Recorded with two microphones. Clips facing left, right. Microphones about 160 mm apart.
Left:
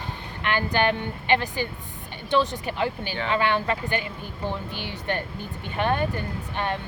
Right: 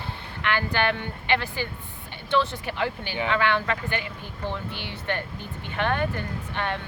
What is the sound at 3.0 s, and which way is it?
Speech, 15° right (ahead or behind).